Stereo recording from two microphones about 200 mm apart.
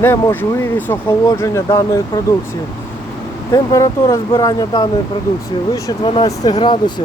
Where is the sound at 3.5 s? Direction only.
15° left (ahead or behind).